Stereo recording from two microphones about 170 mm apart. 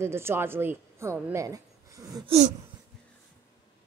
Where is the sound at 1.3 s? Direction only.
20° right (ahead or behind).